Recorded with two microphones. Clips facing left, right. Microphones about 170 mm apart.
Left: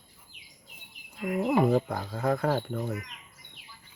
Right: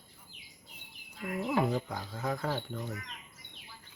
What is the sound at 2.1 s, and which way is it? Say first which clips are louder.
Speech: left 6 dB; 65° left (ahead or behind).